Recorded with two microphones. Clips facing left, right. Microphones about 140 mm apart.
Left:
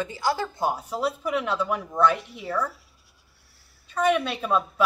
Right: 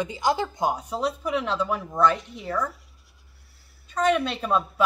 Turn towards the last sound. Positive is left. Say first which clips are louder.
# even
turn(degrees=5)  # may be behind; listen again after turning